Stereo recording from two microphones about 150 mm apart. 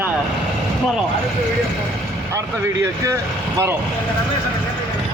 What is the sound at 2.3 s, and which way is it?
Speech, 20° right (ahead or behind).